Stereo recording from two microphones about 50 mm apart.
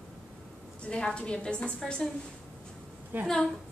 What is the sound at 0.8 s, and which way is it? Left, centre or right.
A woman's voice, centre.